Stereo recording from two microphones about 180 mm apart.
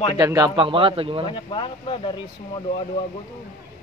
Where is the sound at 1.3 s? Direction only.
25° left (ahead or behind).